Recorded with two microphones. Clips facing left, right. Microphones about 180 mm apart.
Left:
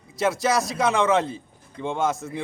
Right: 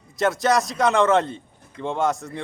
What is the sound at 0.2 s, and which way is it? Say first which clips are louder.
Speech: right 2 dB; centre (ahead or behind).